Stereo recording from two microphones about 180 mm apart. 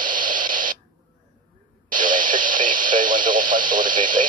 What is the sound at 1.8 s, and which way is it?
Radio, 45° right (ahead or behind).